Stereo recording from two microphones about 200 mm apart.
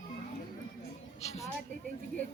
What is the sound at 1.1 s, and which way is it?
Music, 30° left (ahead or behind).